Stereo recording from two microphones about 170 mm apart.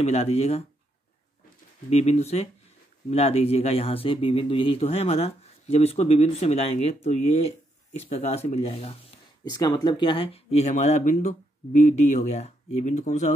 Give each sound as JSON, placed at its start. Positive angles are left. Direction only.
{"t": 0.0, "sound": "speech", "side_deg": 40}
{"t": 1.9, "sound": "speech", "side_deg": 40}
{"t": 9.4, "sound": "speech", "side_deg": 25}